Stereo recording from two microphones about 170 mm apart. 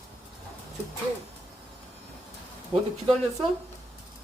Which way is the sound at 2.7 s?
35° right (ahead or behind).